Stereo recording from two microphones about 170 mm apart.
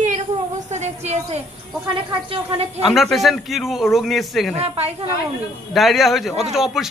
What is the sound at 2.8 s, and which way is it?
A man's voice, centre (ahead or behind).